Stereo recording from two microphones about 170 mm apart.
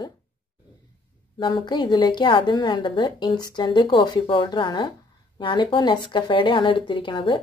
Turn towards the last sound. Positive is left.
turn(degrees=30)  # may be behind; listen again after turning